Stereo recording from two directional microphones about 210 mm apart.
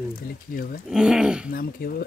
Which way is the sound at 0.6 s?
40° left (ahead or behind).